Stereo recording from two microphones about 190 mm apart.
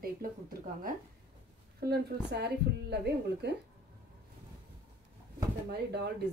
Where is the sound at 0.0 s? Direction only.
50° right (ahead or behind).